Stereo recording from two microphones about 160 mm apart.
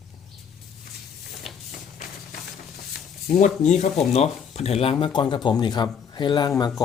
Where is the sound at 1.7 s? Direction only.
55° left (ahead or behind).